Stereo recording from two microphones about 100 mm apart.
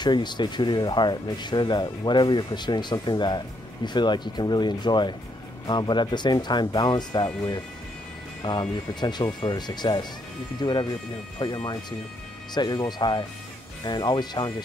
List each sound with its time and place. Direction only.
0.0 s speech: 45° left (ahead or behind)
8.4 s speech: 50° left (ahead or behind)